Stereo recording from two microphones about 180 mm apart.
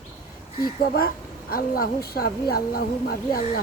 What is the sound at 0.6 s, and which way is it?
Speech, 55° left (ahead or behind).